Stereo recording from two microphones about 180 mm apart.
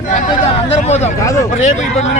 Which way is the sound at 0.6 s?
35° left (ahead or behind).